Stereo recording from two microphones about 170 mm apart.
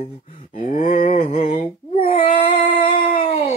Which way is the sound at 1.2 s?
35° left (ahead or behind).